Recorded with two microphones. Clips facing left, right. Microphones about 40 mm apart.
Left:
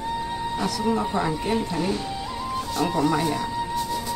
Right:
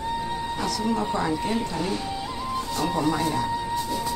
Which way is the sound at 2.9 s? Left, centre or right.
Centre.